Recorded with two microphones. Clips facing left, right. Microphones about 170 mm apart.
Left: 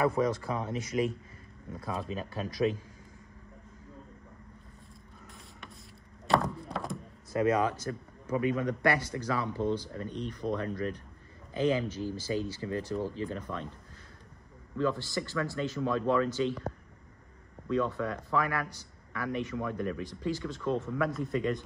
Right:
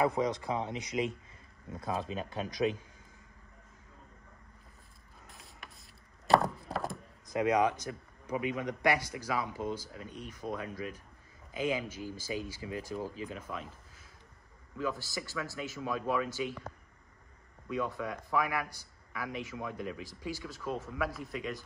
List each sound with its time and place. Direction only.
0.0 s speech: 20° right (ahead or behind)
6.2 s a sound: centre (ahead or behind)
7.2 s a man's voice: 15° right (ahead or behind)
14.8 s a man's voice: 10° right (ahead or behind)
17.6 s a man's voice: 10° right (ahead or behind)